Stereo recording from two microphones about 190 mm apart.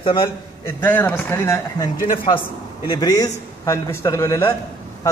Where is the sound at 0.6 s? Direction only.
10° left (ahead or behind).